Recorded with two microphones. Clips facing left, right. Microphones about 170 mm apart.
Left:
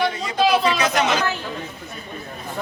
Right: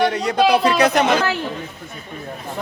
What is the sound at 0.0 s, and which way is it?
Speech, 70° right (ahead or behind).